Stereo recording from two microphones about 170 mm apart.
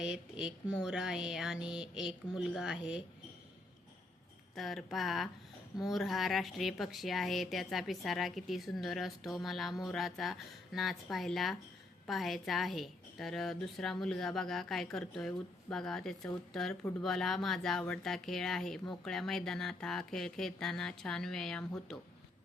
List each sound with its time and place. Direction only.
0.0 s speech: 5° right (ahead or behind)
4.5 s speech: centre (ahead or behind)